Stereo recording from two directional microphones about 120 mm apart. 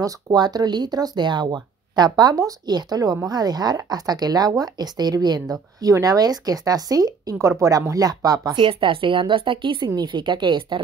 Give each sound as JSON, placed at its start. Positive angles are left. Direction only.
{"t": 0.0, "sound": "speech", "side_deg": -35}